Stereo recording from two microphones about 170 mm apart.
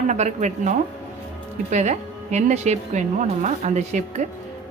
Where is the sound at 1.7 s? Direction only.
45° right (ahead or behind).